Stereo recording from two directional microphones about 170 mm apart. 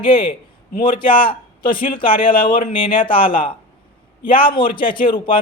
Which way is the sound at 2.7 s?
30° left (ahead or behind).